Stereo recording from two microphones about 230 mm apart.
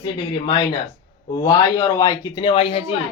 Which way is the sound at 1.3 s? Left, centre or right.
Centre.